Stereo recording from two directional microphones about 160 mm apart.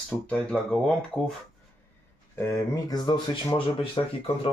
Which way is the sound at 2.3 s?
15° left (ahead or behind).